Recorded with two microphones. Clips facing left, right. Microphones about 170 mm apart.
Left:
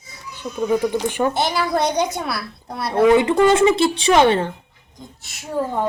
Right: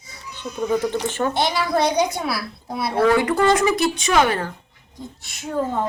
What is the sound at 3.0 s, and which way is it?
A woman's voice, 20° left (ahead or behind).